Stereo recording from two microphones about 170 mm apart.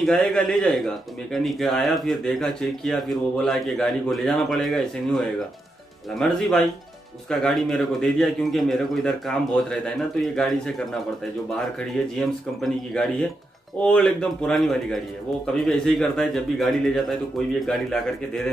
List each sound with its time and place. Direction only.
0.0 s a man's voice: 5° left (ahead or behind)
12.2 s a man's voice: 5° left (ahead or behind)